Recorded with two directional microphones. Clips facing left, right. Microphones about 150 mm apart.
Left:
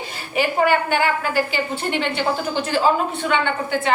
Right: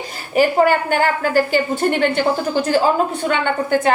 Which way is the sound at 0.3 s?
40° right (ahead or behind).